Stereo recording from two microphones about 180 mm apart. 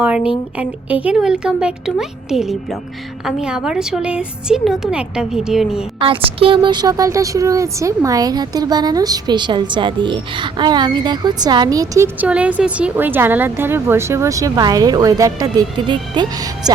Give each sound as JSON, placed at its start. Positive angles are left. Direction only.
{"t": 0.6, "sound": "speech", "side_deg": -10}
{"t": 6.4, "sound": "a woman's voice", "side_deg": -25}